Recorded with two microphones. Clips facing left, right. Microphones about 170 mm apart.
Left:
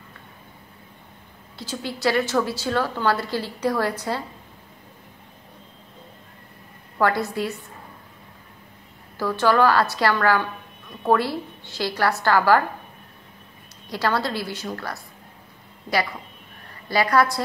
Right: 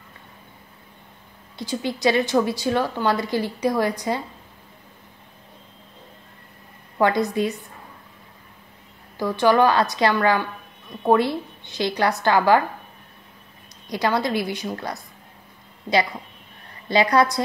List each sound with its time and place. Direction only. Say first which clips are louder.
1.6 s a woman's voice: right 3 dB; 15° right (ahead or behind)
7.0 s a woman's voice: right 2 dB; 20° right (ahead or behind)
9.2 s a woman's voice: right 1 dB; 15° right (ahead or behind)
13.8 s a woman's voice: right 2 dB; 15° right (ahead or behind)